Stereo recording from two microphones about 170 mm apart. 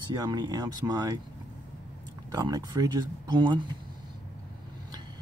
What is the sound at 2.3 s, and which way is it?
Speech, 25° right (ahead or behind).